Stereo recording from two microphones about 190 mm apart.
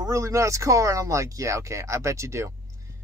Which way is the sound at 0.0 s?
15° right (ahead or behind).